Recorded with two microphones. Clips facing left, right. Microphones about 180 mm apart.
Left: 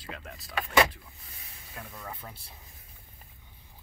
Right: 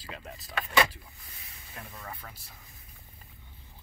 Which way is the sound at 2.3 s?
30° left (ahead or behind).